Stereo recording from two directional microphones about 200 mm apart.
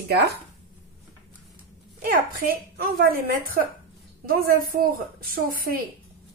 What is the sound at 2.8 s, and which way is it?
A woman's voice, 45° right (ahead or behind).